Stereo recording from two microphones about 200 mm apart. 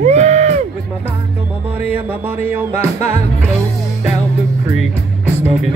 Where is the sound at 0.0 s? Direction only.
35° right (ahead or behind).